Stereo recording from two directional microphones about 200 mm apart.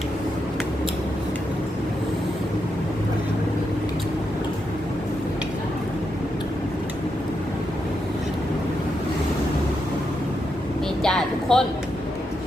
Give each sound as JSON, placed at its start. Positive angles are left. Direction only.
{"t": 11.0, "sound": "vehicle", "side_deg": 5}